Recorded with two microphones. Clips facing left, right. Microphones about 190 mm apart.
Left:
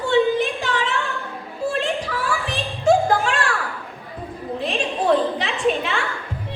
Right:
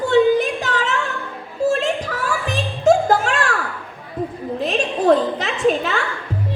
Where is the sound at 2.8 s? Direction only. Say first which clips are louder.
Right 2 dB; 40° right (ahead or behind).